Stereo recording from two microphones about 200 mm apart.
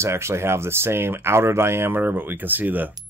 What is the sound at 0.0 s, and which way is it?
Speech, 15° right (ahead or behind).